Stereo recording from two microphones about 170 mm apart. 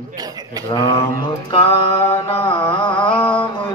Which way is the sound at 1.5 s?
35° left (ahead or behind).